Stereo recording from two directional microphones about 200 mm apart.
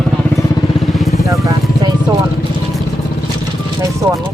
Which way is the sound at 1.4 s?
20° right (ahead or behind).